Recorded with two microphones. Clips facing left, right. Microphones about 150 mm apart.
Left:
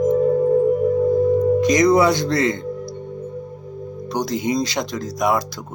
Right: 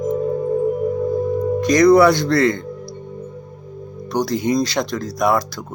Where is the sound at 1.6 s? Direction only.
15° left (ahead or behind).